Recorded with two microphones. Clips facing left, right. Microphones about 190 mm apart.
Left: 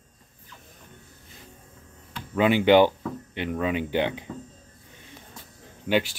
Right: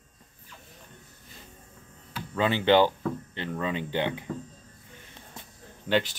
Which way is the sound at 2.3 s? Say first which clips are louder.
Left 4 dB; 15° left (ahead or behind).